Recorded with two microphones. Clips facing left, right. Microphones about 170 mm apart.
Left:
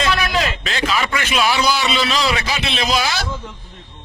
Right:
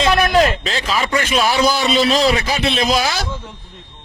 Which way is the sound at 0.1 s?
45° right (ahead or behind).